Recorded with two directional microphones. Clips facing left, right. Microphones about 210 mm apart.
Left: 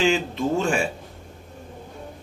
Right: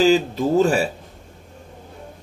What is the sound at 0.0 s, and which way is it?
Speech, 40° right (ahead or behind).